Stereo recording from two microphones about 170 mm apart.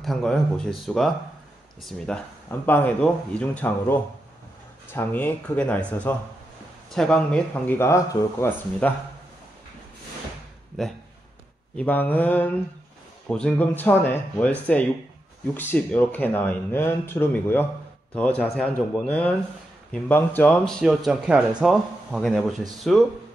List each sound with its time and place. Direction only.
0.0 s speech: centre (ahead or behind)
11.7 s speech: 10° left (ahead or behind)